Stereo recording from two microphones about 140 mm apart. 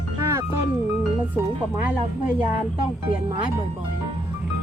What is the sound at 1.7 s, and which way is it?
Speech, 10° right (ahead or behind).